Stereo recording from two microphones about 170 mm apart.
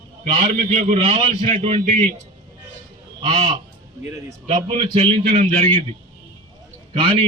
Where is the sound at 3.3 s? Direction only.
40° right (ahead or behind).